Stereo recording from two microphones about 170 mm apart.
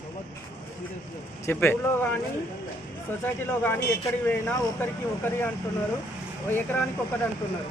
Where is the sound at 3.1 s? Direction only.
10° left (ahead or behind).